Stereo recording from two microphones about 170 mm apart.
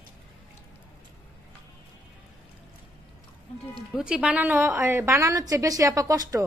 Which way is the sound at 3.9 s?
5° right (ahead or behind).